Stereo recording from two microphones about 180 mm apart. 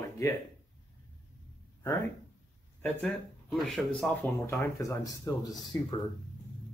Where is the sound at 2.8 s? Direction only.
5° left (ahead or behind).